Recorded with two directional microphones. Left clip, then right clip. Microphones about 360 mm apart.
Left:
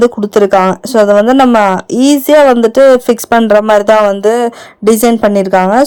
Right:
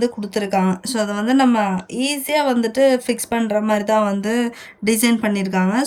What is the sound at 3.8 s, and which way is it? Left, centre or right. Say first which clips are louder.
Speech: left 11 dB; centre.